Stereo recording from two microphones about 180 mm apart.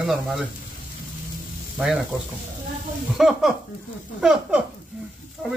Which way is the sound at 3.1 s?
Centre (ahead or behind).